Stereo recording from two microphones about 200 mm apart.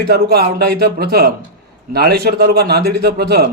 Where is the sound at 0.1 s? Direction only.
55° right (ahead or behind).